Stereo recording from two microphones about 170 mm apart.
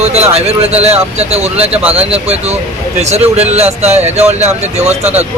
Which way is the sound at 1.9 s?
35° right (ahead or behind).